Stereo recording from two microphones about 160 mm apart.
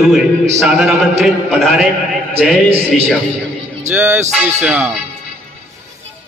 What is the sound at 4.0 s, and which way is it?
Speech, 10° right (ahead or behind).